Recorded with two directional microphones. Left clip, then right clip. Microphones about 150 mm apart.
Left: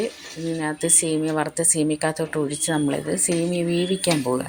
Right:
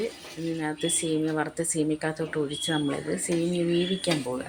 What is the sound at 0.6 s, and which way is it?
A woman's voice, 15° left (ahead or behind).